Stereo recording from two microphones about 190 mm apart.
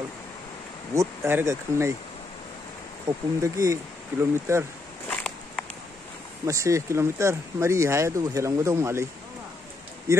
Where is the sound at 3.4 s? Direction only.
15° right (ahead or behind).